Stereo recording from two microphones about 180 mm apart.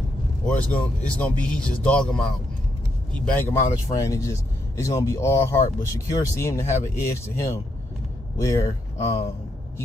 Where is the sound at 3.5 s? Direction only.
15° left (ahead or behind).